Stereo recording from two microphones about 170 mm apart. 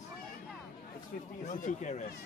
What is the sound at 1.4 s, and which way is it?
Speech, 50° left (ahead or behind).